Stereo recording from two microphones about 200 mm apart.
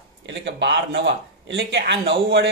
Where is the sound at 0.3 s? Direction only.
60° right (ahead or behind).